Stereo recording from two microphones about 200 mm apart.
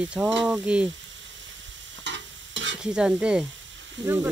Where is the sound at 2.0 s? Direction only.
65° right (ahead or behind).